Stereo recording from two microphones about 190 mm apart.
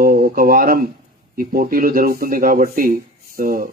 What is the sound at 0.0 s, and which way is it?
Speech, 50° right (ahead or behind).